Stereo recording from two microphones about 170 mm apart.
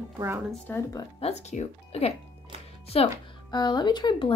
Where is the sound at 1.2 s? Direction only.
40° left (ahead or behind).